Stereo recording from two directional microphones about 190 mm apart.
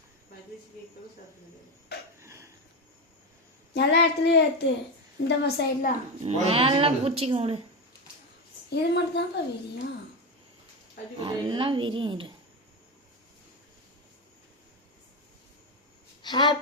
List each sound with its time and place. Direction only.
2.2 s cricket: 15° right (ahead or behind)
3.8 s speech: 65° left (ahead or behind)
6.2 s speech: 30° right (ahead or behind)
8.7 s speech: 60° left (ahead or behind)
11.2 s speech: 20° right (ahead or behind)
16.2 s a woman's voice: 25° left (ahead or behind)